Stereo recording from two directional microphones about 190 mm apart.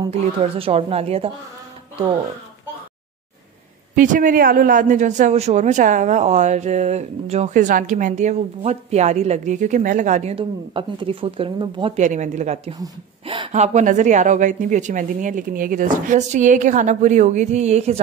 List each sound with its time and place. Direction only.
0.1 s a man's voice: 35° right (ahead or behind)
3.9 s a man's voice: 45° right (ahead or behind); by 12.0 s 25° right (ahead or behind)
12.0 s a man's voice: 40° right (ahead or behind)
12.8 s a man's voice: 25° right (ahead or behind)